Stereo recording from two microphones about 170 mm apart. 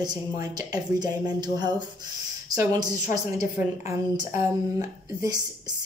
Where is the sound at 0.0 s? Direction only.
25° right (ahead or behind).